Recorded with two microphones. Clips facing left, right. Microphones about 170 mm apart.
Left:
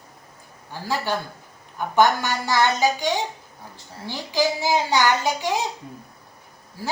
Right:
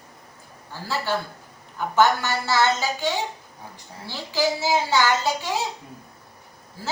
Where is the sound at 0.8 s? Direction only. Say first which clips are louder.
Left 1 dB; 15° left (ahead or behind).